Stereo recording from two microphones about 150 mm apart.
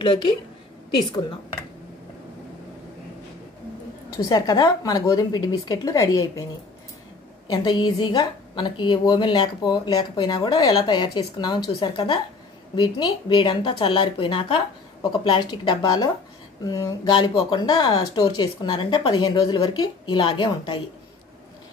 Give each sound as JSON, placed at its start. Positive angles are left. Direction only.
{"t": 0.0, "sound": "a woman's voice", "side_deg": 30}
{"t": 4.2, "sound": "speech", "side_deg": 25}
{"t": 7.4, "sound": "a woman's voice", "side_deg": 30}